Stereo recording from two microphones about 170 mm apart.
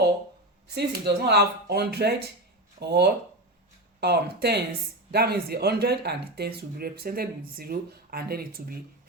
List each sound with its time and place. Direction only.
0.7 s speech: 75° right (ahead or behind)